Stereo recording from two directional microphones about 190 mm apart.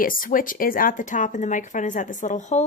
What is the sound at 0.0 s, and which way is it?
Speech, 45° left (ahead or behind).